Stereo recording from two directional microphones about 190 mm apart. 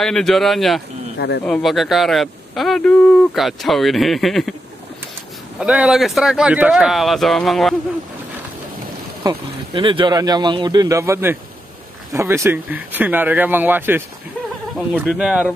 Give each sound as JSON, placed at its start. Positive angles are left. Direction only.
{"t": 0.0, "sound": "speech", "side_deg": 0}
{"t": 5.6, "sound": "speech", "side_deg": -5}
{"t": 9.2, "sound": "speech", "side_deg": -25}
{"t": 15.0, "sound": "speech", "side_deg": -5}